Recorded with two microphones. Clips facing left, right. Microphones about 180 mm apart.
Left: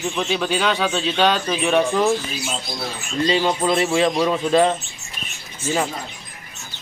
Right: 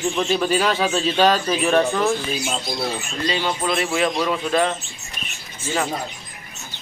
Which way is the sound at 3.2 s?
25° left (ahead or behind).